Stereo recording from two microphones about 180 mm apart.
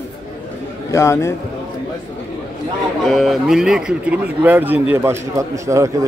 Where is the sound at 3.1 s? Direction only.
Centre (ahead or behind).